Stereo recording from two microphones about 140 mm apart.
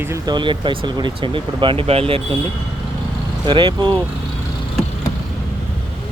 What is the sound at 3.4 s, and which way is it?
Speech, 35° right (ahead or behind).